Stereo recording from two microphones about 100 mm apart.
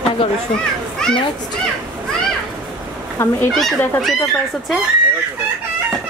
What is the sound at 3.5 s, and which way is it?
Speech, centre (ahead or behind).